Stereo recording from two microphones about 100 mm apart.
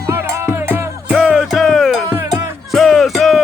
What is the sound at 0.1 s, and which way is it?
Music, 30° right (ahead or behind).